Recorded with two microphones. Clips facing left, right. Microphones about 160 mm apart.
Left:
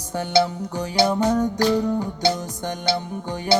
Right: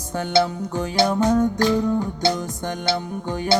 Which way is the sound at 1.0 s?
15° left (ahead or behind).